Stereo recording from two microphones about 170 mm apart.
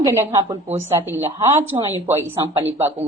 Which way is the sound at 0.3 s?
30° right (ahead or behind).